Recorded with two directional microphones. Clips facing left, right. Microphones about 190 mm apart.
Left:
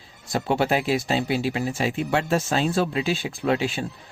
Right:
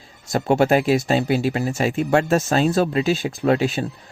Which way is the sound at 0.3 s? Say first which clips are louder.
Right 5 dB; 45° right (ahead or behind).